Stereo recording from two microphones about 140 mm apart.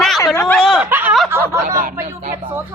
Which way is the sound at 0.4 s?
5° left (ahead or behind).